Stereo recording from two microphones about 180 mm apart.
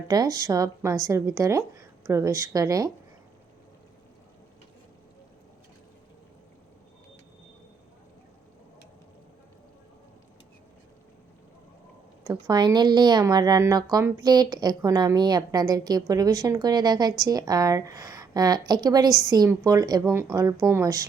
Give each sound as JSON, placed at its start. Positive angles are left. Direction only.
{"t": 0.1, "sound": "a woman's voice", "side_deg": -20}
{"t": 12.3, "sound": "a woman's voice", "side_deg": -20}